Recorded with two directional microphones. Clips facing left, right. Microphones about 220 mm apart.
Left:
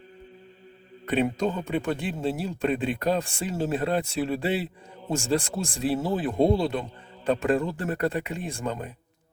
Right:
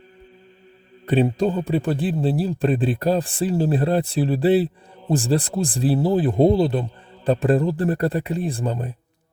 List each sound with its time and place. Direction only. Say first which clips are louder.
1.0 s a man's voice: right 5 dB; 30° right (ahead or behind)